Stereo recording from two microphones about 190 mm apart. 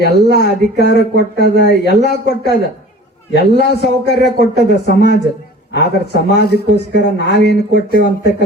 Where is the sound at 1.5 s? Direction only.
65° left (ahead or behind).